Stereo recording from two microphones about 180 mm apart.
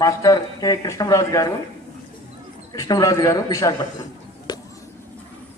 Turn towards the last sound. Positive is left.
turn(degrees=25)  # may be behind; listen again after turning